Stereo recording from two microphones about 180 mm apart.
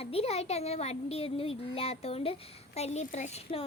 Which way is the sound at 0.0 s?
35° left (ahead or behind).